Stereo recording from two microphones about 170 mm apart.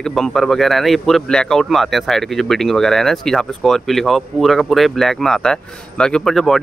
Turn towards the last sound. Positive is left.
turn(degrees=0)  # may be behind; listen again after turning